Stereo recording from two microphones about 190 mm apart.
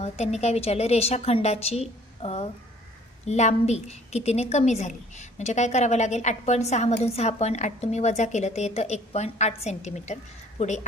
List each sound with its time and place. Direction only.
0.0 s a woman's voice: 35° left (ahead or behind)